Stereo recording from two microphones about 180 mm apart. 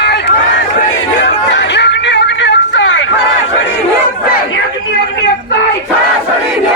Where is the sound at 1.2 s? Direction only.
80° left.